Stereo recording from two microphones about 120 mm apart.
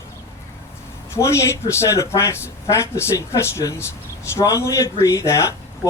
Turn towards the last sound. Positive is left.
turn(degrees=25)  # may be behind; listen again after turning